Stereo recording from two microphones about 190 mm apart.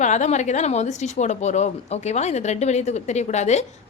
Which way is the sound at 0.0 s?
40° left (ahead or behind).